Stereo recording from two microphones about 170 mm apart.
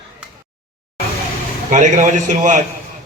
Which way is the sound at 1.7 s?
45° right (ahead or behind).